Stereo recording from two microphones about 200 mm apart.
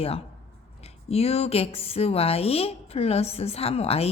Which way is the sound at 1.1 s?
30° left (ahead or behind).